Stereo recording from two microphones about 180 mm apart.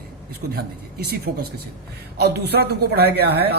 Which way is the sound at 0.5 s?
60° right (ahead or behind).